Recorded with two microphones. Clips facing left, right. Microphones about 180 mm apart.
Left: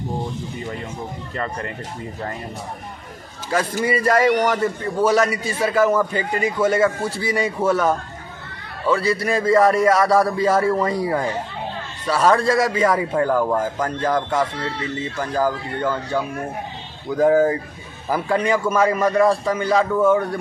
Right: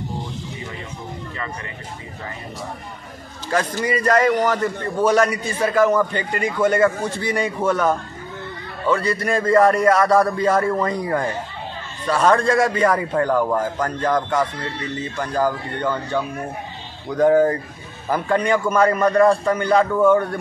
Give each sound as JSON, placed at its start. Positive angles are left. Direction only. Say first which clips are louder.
{"t": 3.5, "sound": "a man's voice", "louder": "left 1 dB", "side_deg": 10}